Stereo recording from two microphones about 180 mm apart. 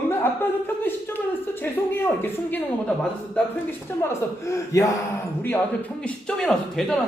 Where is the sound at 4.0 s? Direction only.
15° left (ahead or behind).